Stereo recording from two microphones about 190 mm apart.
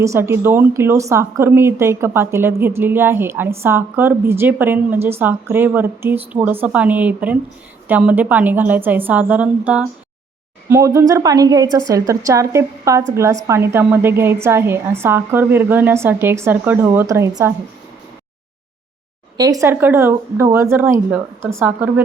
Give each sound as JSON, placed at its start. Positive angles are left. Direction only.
{"t": 0.0, "sound": "a woman's voice", "side_deg": -15}
{"t": 19.4, "sound": "a woman's voice", "side_deg": -20}